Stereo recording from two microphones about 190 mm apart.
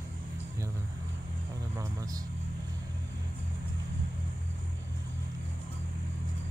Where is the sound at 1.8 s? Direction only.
20° right (ahead or behind).